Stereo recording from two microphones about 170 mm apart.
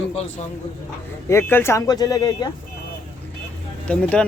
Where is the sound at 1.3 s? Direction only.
15° left (ahead or behind).